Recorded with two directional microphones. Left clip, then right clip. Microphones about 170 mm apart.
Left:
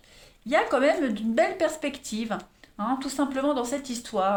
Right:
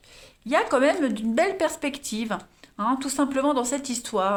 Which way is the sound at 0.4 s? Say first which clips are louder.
Right 1 dB; 40° right (ahead or behind).